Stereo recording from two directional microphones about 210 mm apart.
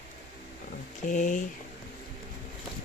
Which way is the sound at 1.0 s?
35° left (ahead or behind).